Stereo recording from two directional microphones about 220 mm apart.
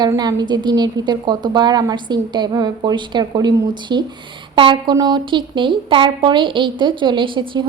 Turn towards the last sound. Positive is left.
turn(degrees=-20)  # may be behind; listen again after turning